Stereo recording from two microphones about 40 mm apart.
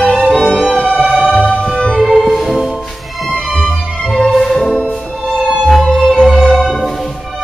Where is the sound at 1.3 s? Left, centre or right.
Left.